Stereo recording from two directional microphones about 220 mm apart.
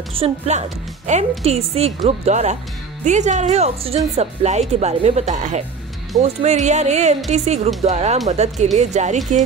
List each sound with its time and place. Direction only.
0.1 s a woman's voice: 30° right (ahead or behind)